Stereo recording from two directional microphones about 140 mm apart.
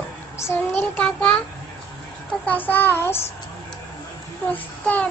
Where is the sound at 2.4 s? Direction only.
15° left (ahead or behind).